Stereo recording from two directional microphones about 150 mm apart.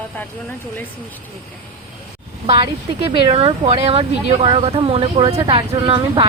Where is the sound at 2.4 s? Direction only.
35° right (ahead or behind).